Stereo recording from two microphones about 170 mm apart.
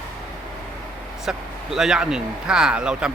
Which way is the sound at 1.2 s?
5° right (ahead or behind).